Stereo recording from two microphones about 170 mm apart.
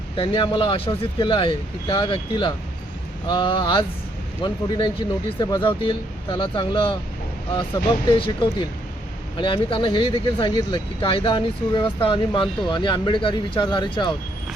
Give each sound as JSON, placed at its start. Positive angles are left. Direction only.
{"t": 0.2, "sound": "speech", "side_deg": 30}